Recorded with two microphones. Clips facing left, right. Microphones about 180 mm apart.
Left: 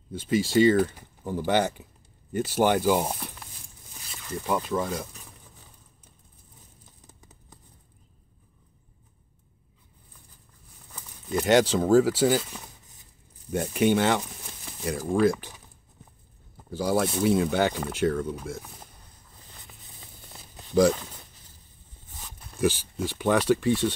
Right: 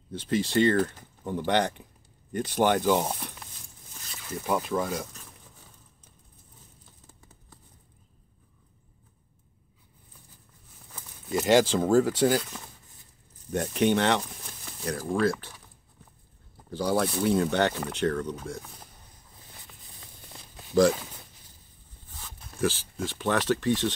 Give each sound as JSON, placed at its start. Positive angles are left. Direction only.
{"t": 0.1, "sound": "speech", "side_deg": 5}
{"t": 4.1, "sound": "speech", "side_deg": -5}
{"t": 7.1, "sound": "a sound", "side_deg": 20}
{"t": 11.2, "sound": "speech", "side_deg": 0}
{"t": 16.7, "sound": "speech", "side_deg": 5}
{"t": 19.7, "sound": "a sound", "side_deg": 0}
{"t": 20.9, "sound": "speech", "side_deg": -10}
{"t": 22.1, "sound": "a sound", "side_deg": 15}
{"t": 23.0, "sound": "speech", "side_deg": 10}